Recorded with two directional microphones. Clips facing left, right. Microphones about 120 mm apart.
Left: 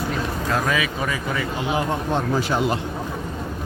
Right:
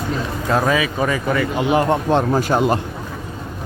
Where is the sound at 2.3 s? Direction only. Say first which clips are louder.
Right 5 dB; 45° right (ahead or behind).